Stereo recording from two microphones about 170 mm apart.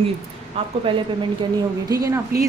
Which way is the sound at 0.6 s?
35° right (ahead or behind).